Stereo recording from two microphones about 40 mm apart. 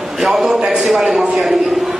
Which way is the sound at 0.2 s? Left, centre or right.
Centre.